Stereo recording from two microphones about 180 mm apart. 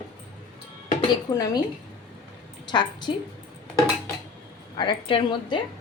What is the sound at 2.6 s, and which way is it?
Speech, 25° left (ahead or behind).